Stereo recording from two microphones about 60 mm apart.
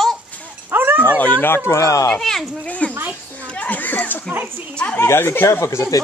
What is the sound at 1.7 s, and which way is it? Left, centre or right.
Speech, left.